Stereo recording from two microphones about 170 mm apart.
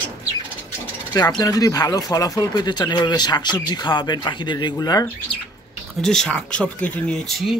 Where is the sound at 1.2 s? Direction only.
25° left (ahead or behind).